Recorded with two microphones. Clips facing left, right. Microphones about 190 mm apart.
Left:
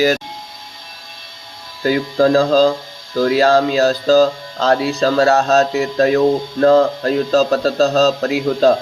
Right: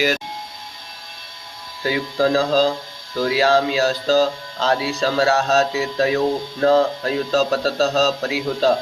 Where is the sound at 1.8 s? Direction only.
45° left (ahead or behind).